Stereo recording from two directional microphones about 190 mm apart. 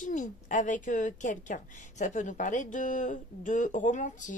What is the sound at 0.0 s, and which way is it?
Speech, 40° left (ahead or behind).